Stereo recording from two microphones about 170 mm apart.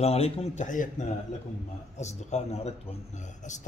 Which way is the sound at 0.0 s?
35° left (ahead or behind).